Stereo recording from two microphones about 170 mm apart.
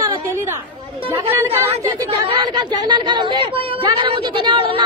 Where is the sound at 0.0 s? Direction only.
20° right (ahead or behind).